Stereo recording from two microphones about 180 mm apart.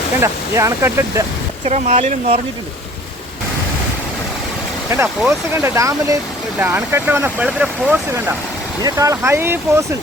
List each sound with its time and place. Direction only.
0.2 s speech: 15° right (ahead or behind)
1.6 s speech: 40° right (ahead or behind)
4.9 s speech: 15° right (ahead or behind)